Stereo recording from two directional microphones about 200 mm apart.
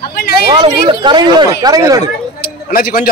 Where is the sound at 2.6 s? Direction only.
45° left (ahead or behind).